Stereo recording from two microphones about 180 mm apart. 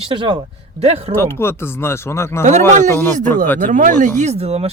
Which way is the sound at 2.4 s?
40° right (ahead or behind).